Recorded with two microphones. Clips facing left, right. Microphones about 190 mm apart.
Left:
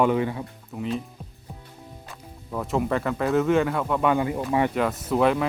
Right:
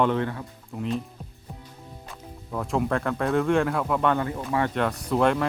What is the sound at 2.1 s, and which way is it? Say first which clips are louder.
Speech: left 1 dB; centre (ahead or behind).